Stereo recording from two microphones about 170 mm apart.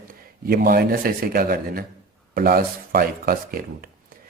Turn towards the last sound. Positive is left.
turn(degrees=-60)  # may be behind; listen again after turning